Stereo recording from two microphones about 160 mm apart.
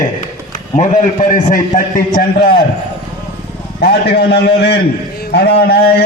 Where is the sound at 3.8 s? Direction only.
90° left.